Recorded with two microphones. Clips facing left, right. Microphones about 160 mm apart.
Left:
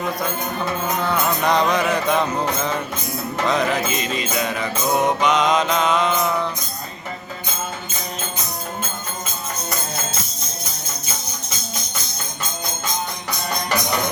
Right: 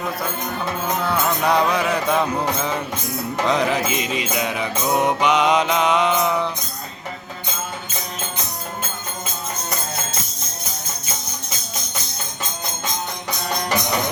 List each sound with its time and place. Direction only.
1.4 s music: 10° right (ahead or behind)